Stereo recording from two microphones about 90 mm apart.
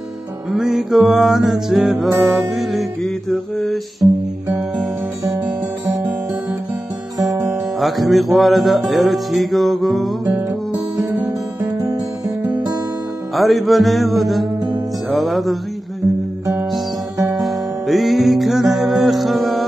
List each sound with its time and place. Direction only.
0.5 s music: centre (ahead or behind)
7.2 s music: 45° right (ahead or behind)
7.8 s music: centre (ahead or behind)
11.1 s music: 40° right (ahead or behind)
13.3 s music: centre (ahead or behind)
17.4 s music: centre (ahead or behind)